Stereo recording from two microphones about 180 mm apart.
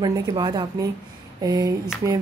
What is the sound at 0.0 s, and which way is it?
A woman's voice, 25° right (ahead or behind).